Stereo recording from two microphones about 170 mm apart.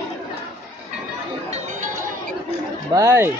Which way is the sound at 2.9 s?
20° right (ahead or behind).